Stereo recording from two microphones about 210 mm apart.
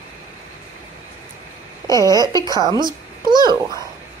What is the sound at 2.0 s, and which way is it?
A woman's voice, 20° right (ahead or behind).